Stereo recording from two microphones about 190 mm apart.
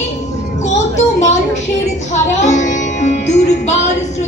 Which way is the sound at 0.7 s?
35° left (ahead or behind).